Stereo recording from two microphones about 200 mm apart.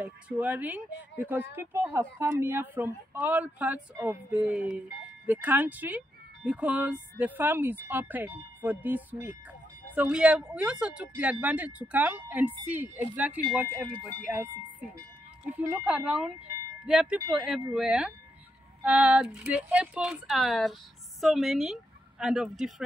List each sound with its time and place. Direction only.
0.0 s speech: 5° right (ahead or behind)